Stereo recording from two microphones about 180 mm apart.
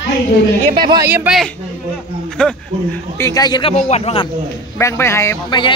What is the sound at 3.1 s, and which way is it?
Speech, 20° left (ahead or behind).